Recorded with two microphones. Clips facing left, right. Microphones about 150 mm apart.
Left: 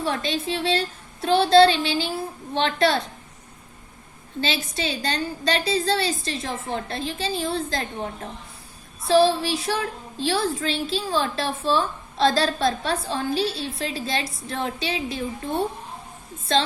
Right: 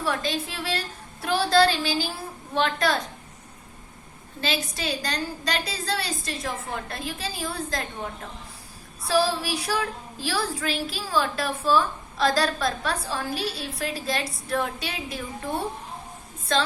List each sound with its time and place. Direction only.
0.0 s a woman's voice: 25° left (ahead or behind)
4.4 s a woman's voice: 25° left (ahead or behind)
9.0 s a woman's voice: 25° left (ahead or behind)